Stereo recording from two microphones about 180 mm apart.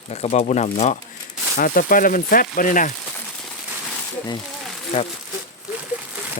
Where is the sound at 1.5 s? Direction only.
50° left (ahead or behind).